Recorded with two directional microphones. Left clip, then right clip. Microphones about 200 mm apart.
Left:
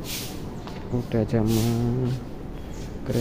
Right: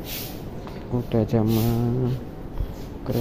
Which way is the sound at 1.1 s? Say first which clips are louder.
Right 2 dB; 10° right (ahead or behind).